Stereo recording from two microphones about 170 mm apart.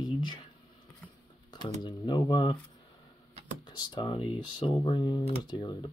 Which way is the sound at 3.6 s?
25° left (ahead or behind).